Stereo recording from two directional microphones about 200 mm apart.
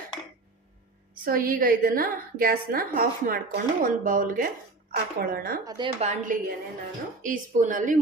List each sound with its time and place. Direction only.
1.2 s a woman's voice: 45° right (ahead or behind)
5.6 s speech: 20° right (ahead or behind)
6.0 s speech: 35° right (ahead or behind)